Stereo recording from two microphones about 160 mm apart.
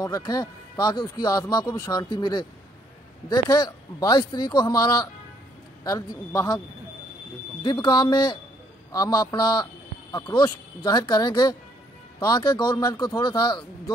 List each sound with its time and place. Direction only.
0.0 s speech: 25° left (ahead or behind)
7.6 s speech: 25° left (ahead or behind)